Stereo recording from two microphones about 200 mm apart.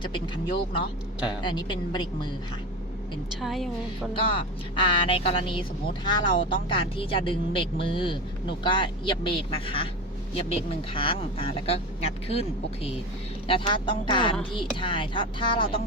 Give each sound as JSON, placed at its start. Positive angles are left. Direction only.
{"t": 0.0, "sound": "speech", "side_deg": 25}
{"t": 3.4, "sound": "music", "side_deg": 0}
{"t": 4.1, "sound": "speech", "side_deg": 25}